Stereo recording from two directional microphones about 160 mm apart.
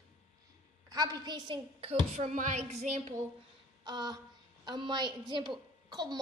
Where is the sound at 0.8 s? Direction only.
25° right (ahead or behind); by 3.2 s 45° right (ahead or behind).